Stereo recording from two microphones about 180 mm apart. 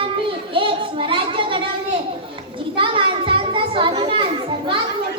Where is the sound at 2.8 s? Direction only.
30° right (ahead or behind).